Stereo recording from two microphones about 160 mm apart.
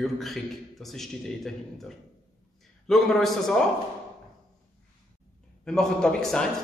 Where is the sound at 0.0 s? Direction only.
Centre (ahead or behind).